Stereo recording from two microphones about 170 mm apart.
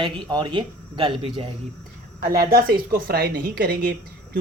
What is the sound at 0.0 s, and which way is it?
Speech, 30° right (ahead or behind).